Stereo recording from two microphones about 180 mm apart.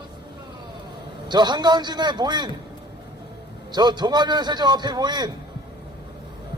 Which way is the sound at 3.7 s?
25° right (ahead or behind).